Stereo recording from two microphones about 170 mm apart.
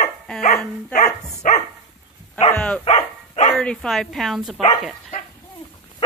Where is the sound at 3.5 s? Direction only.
5° left (ahead or behind).